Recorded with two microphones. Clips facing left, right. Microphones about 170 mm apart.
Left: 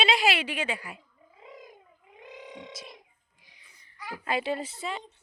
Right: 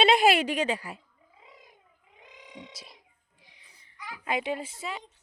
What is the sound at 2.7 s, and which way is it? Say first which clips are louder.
Speech: left 6 dB; 30° right (ahead or behind).